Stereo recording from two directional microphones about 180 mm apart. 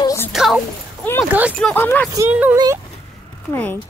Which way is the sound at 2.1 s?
10° right (ahead or behind).